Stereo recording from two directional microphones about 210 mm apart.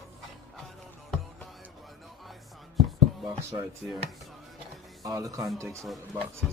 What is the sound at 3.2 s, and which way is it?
Speech, 15° right (ahead or behind).